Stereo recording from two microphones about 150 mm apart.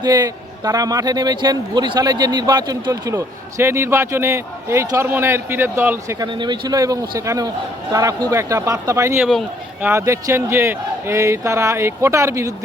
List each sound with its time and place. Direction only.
0.0 s a man's voice: 25° right (ahead or behind)
6.1 s a man's voice: 30° right (ahead or behind)